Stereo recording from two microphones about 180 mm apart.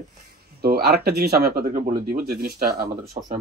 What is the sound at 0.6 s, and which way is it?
Speech, 60° right (ahead or behind).